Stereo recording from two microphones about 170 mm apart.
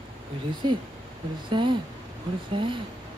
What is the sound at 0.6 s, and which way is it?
Speech, 30° right (ahead or behind).